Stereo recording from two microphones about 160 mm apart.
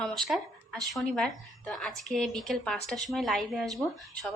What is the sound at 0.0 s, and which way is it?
Speech, centre (ahead or behind).